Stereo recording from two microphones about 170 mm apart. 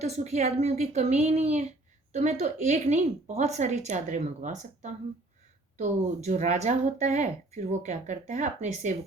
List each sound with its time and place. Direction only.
0.0 s a woman's voice: 40° right (ahead or behind)